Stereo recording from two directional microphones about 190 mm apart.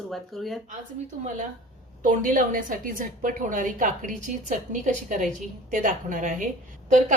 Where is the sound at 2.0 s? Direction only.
45° right (ahead or behind).